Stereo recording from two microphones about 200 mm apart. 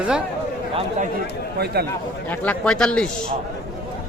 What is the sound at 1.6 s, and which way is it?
Speech, 50° right (ahead or behind).